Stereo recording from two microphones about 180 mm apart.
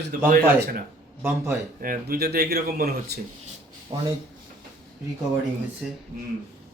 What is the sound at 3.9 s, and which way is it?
Speech, 25° right (ahead or behind).